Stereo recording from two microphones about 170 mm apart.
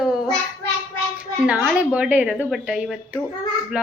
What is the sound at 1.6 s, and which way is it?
A woman's voice, 5° right (ahead or behind).